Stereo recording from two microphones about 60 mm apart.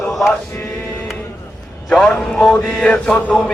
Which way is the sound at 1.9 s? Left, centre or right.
Centre.